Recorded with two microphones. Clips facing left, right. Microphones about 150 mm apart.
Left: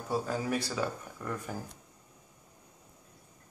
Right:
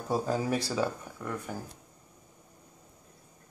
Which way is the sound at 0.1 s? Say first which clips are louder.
Right 3 dB; 25° right (ahead or behind).